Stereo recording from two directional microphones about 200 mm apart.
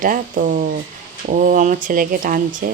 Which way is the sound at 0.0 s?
40° right (ahead or behind).